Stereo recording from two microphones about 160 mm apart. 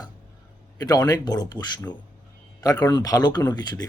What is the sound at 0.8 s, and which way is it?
Speech, 25° left (ahead or behind).